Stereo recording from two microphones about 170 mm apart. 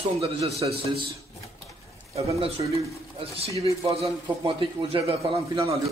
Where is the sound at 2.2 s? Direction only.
35° right (ahead or behind).